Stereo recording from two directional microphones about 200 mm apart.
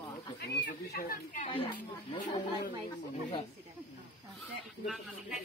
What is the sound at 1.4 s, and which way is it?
Speech, 30° left (ahead or behind).